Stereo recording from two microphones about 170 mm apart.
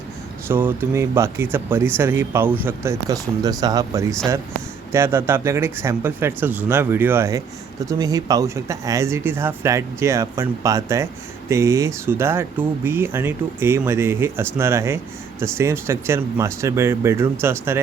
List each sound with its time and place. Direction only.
0.4 s speech: 15° right (ahead or behind)